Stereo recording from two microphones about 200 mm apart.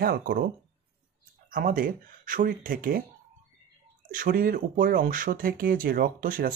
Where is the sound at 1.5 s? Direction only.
45° right (ahead or behind).